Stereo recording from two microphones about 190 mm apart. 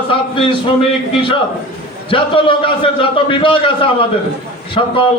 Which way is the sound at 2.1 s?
25° left (ahead or behind).